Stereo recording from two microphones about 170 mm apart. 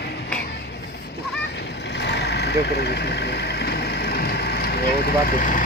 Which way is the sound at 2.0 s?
80° left.